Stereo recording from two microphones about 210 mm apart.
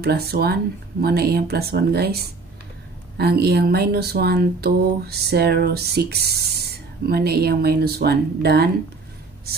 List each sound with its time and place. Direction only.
0.0 s speech: 50° right (ahead or behind)
3.2 s speech: 50° right (ahead or behind)